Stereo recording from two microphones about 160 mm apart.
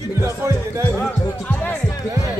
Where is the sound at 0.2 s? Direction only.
15° right (ahead or behind).